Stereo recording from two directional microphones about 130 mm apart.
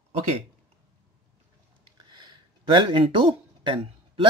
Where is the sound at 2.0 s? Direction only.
35° right (ahead or behind).